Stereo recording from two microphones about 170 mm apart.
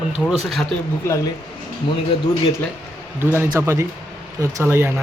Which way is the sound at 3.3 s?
15° right (ahead or behind).